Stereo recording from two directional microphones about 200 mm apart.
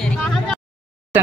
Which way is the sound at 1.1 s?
10° right (ahead or behind).